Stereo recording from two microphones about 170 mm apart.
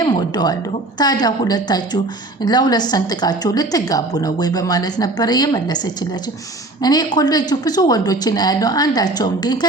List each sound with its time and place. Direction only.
0.0 s a sound: 25° left (ahead or behind)
0.9 s a woman's voice: 25° left (ahead or behind)
6.8 s a woman's voice: 25° left (ahead or behind)